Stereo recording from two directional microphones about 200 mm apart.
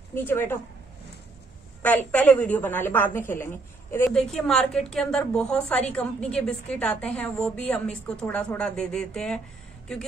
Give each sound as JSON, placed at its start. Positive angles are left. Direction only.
{"t": 0.1, "sound": "a woman's voice", "side_deg": 10}
{"t": 2.0, "sound": "a woman's voice", "side_deg": 5}